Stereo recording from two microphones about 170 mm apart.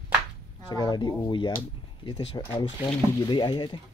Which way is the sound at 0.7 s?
25° left (ahead or behind).